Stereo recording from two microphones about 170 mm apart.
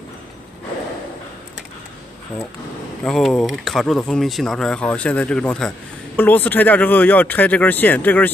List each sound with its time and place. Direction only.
3.0 s speech: centre (ahead or behind)